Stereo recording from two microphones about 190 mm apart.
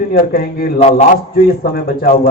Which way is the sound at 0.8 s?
35° left (ahead or behind).